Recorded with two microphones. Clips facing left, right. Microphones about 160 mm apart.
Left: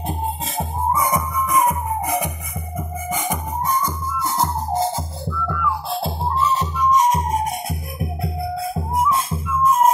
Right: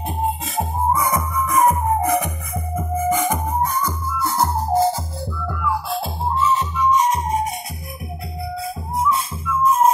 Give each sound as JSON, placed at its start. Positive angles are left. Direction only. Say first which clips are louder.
{"t": 0.9, "sound": "music", "louder": "even", "side_deg": 15}
{"t": 6.4, "sound": "music", "louder": "right 1 dB", "side_deg": 40}
{"t": 8.7, "sound": "music", "louder": "even", "side_deg": 45}